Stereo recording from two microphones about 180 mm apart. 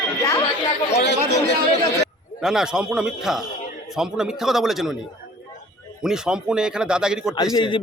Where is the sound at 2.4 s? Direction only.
Centre (ahead or behind).